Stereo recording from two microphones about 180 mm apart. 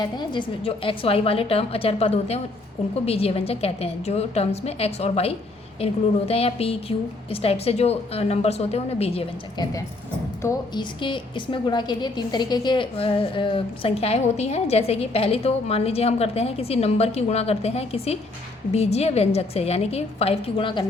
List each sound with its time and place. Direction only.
0.0 s a woman's voice: 25° left (ahead or behind)